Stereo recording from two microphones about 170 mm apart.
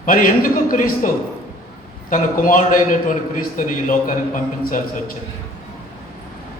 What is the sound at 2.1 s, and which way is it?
A man's voice, 55° left (ahead or behind).